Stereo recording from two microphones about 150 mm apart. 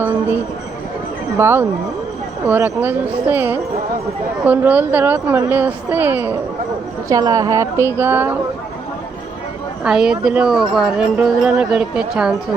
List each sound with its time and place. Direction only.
1.4 s a woman's voice: 15° right (ahead or behind)
9.8 s a woman's voice: 5° right (ahead or behind)